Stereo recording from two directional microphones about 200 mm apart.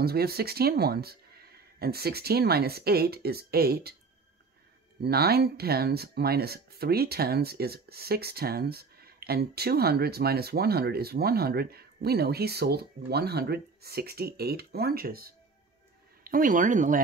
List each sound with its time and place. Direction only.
0.0 s speech: 50° right (ahead or behind)
5.0 s speech: 50° right (ahead or behind)